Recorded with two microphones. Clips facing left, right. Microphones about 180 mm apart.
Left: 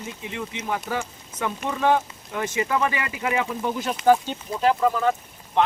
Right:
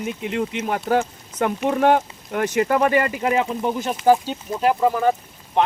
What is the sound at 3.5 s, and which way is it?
Speech, 20° right (ahead or behind).